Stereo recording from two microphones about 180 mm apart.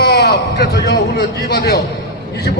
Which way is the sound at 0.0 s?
70° left (ahead or behind).